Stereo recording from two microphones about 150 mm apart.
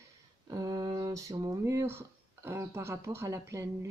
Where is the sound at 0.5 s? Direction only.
25° right (ahead or behind).